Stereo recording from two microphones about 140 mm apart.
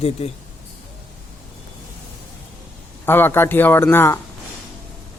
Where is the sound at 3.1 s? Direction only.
15° left (ahead or behind).